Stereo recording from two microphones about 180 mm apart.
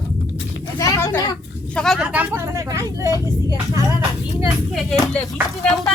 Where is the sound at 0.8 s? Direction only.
15° left (ahead or behind).